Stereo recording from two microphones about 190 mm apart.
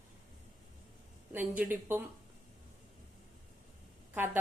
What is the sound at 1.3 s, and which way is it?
Speech, 10° right (ahead or behind).